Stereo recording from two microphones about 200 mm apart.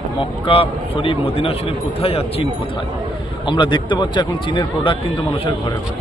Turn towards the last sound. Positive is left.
turn(degrees=25)  # may be behind; listen again after turning